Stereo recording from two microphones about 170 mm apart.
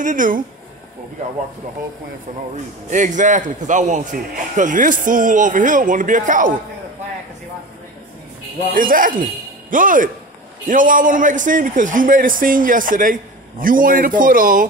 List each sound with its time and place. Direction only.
0.0 s a man's voice: 50° right (ahead or behind)
2.9 s a man's voice: 45° right (ahead or behind)
8.7 s a man's voice: 55° right (ahead or behind)